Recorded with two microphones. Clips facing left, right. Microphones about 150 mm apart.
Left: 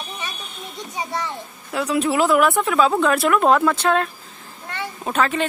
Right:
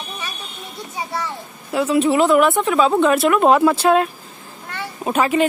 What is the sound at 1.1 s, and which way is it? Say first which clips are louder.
Speech: right 1 dB; 5° right (ahead or behind).